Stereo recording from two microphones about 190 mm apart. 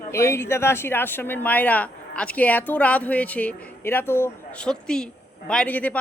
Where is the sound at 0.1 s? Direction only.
15° left (ahead or behind).